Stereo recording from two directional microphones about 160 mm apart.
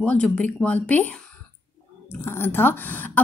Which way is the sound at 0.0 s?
10° left (ahead or behind).